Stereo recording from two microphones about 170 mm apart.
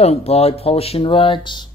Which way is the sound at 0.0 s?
35° left (ahead or behind).